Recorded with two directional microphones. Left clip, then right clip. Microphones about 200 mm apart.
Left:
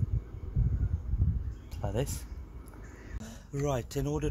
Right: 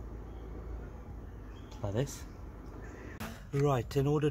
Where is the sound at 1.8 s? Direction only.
35° left (ahead or behind).